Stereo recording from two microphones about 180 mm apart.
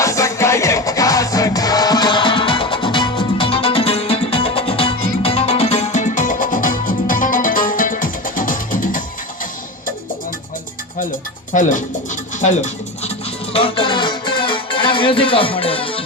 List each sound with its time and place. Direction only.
0.0 s music: 15° left (ahead or behind); by 9.0 s 50° left (ahead or behind)
11.0 s music: 45° left (ahead or behind); by 16.0 s 30° left (ahead or behind)